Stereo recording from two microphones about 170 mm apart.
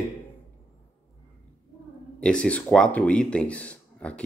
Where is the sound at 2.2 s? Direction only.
5° left (ahead or behind).